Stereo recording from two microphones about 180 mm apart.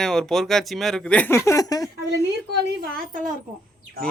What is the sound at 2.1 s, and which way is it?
Speech, 65° right (ahead or behind).